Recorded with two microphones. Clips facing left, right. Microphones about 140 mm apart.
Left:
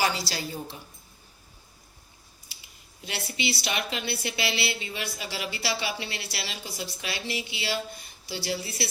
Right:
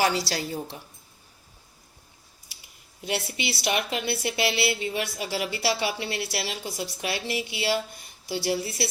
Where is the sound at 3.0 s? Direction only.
55° right (ahead or behind).